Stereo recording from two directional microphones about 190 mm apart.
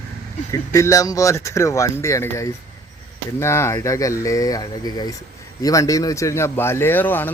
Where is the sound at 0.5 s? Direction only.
15° left (ahead or behind).